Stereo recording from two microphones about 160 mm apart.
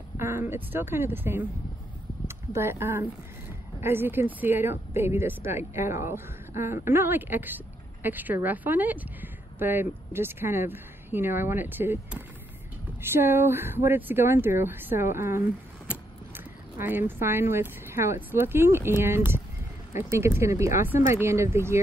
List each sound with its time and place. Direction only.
0.2 s a woman's voice: 15° right (ahead or behind)